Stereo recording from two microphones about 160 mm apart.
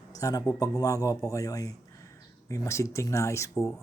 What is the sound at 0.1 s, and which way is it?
Speech, 20° left (ahead or behind).